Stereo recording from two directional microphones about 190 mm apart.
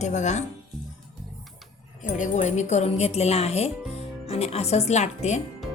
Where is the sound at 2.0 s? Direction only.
40° left (ahead or behind).